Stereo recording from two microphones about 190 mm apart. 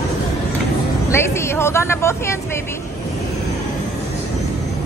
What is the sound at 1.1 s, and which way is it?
Speech, 15° left (ahead or behind).